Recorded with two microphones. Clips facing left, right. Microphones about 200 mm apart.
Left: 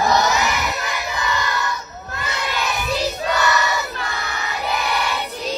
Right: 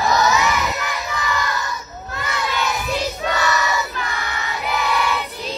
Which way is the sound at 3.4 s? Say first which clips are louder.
Even; 65° left (ahead or behind).